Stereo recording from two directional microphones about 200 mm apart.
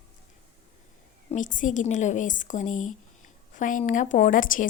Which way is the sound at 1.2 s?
40° left (ahead or behind).